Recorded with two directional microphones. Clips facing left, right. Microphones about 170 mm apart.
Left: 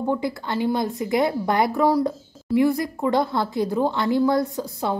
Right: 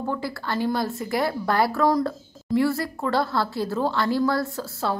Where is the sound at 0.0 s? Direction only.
20° left (ahead or behind).